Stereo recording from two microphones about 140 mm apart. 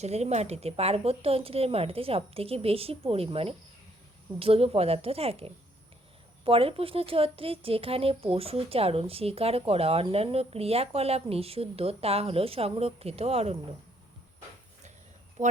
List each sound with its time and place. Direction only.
0.0 s speech: 50° right (ahead or behind)
15.4 s speech: 60° right (ahead or behind)